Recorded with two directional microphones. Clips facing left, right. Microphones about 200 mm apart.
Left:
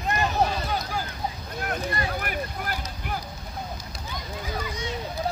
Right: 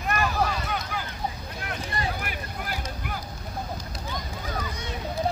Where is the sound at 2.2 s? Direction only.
50° left (ahead or behind).